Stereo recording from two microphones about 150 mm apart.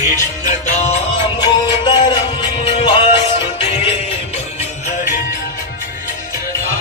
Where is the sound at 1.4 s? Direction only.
30° left (ahead or behind).